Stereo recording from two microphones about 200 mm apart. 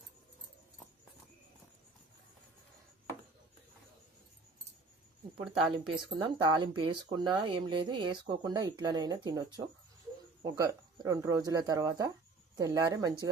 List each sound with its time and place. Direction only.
5.9 s speech: 25° right (ahead or behind)